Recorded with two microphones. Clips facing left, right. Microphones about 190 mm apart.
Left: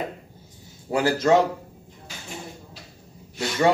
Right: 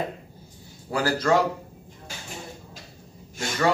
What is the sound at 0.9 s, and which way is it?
Speech, 25° left (ahead or behind).